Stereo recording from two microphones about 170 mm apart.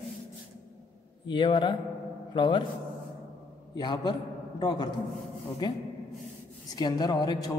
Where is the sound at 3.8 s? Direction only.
25° left (ahead or behind).